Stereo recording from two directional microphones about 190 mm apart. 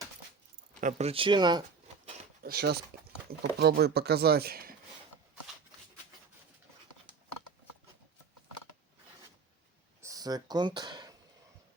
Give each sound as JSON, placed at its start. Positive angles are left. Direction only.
{"t": 0.8, "sound": "speech", "side_deg": -40}
{"t": 2.4, "sound": "speech", "side_deg": -55}
{"t": 10.0, "sound": "a sound", "side_deg": -20}